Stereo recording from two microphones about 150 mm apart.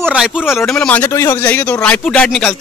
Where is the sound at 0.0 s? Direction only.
5° right (ahead or behind).